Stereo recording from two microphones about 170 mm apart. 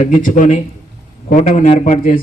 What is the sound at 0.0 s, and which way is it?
A man's voice, 45° left (ahead or behind).